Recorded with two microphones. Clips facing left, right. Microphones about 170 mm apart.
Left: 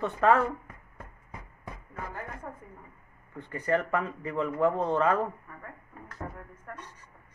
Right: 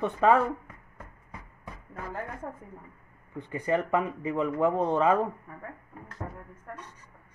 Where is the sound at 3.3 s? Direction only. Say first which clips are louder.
Even; 15° right (ahead or behind).